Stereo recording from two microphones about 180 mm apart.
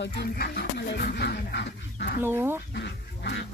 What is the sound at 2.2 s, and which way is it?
Speech, 10° right (ahead or behind).